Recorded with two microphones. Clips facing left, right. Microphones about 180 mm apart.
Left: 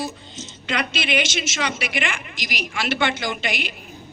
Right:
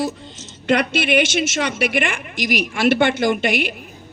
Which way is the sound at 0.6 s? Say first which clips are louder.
Right 8 dB; 60° right (ahead or behind).